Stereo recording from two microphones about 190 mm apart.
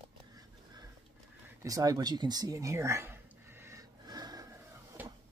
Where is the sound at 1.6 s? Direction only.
20° right (ahead or behind).